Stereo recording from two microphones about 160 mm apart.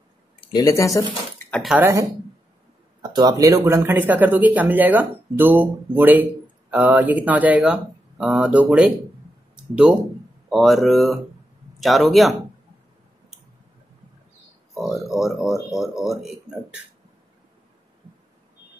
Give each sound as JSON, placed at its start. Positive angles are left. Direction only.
{"t": 0.5, "sound": "speech", "side_deg": 25}
{"t": 1.5, "sound": "speech", "side_deg": 0}
{"t": 1.8, "sound": "a man's voice", "side_deg": -15}
{"t": 3.0, "sound": "a man's voice", "side_deg": -25}
{"t": 14.7, "sound": "speech", "side_deg": 0}